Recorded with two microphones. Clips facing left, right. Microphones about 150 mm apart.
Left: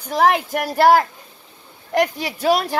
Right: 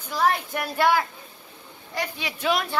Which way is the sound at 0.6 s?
40° left (ahead or behind).